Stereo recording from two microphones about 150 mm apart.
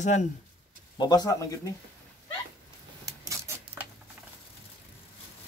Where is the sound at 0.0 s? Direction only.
55° left (ahead or behind).